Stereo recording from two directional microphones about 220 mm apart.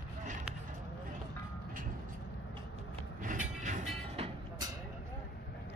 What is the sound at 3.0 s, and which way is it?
Train, 35° right (ahead or behind).